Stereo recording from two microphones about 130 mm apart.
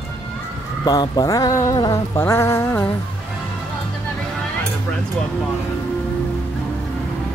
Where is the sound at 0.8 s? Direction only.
30° left (ahead or behind).